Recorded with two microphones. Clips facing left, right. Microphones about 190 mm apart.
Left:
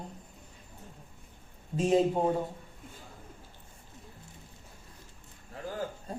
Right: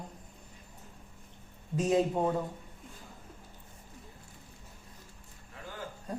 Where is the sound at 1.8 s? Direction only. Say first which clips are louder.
Left 2 dB; 30° left (ahead or behind).